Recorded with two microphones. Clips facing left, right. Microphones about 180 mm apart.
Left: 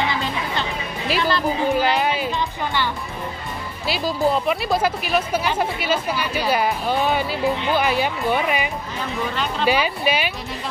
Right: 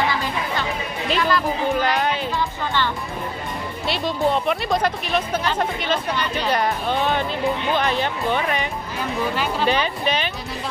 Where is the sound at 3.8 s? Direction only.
Centre (ahead or behind).